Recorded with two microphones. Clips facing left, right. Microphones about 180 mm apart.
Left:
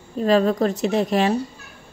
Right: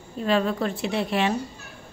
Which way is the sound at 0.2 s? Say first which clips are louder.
Left 6 dB; 40° left (ahead or behind).